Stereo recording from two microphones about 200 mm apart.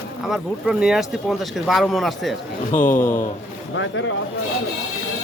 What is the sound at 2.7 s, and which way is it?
Speech, 40° left (ahead or behind).